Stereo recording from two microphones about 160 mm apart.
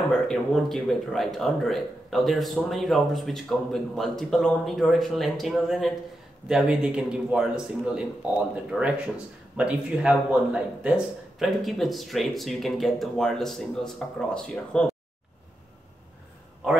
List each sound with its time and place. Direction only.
0.3 s speech: centre (ahead or behind)